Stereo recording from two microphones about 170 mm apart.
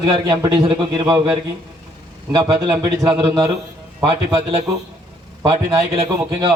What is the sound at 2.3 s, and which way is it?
A man's voice, 25° right (ahead or behind).